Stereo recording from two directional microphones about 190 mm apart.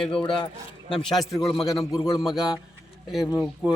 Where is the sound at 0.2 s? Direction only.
25° left (ahead or behind).